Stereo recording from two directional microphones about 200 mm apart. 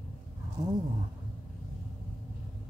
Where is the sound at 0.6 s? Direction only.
20° right (ahead or behind).